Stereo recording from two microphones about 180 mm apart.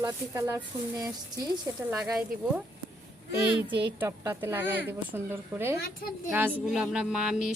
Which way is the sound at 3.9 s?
15° right (ahead or behind).